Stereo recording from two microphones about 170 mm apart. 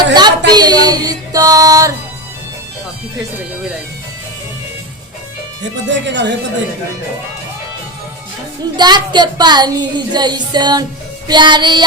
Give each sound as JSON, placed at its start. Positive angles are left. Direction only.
{"t": 0.1, "sound": "speech", "side_deg": -25}
{"t": 5.9, "sound": "speech", "side_deg": -90}
{"t": 8.7, "sound": "child singing", "side_deg": -25}